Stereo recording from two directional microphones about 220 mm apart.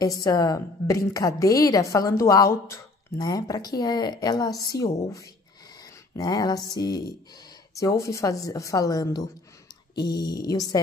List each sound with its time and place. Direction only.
0.0 s a woman's voice: 15° left (ahead or behind)